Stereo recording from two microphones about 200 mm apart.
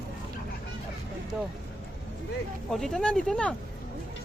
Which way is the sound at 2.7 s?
Centre (ahead or behind).